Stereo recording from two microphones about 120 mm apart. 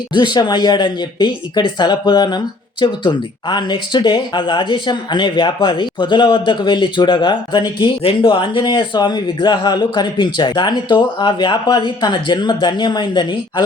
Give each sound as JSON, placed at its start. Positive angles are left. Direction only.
{"t": 0.1, "sound": "speech", "side_deg": 40}